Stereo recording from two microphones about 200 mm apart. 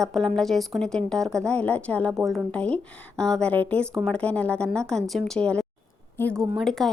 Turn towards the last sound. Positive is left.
turn(degrees=0)  # may be behind; listen again after turning